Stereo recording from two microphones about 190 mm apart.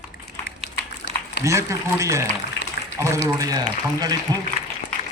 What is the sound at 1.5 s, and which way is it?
Speech, 15° right (ahead or behind).